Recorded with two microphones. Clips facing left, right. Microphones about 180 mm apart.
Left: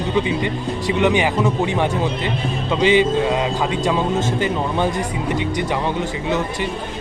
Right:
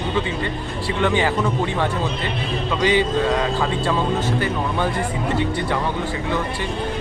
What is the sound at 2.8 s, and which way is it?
Speech, 20° left (ahead or behind).